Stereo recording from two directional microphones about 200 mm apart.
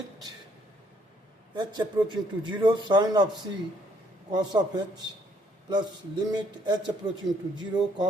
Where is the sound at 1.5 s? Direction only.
20° right (ahead or behind).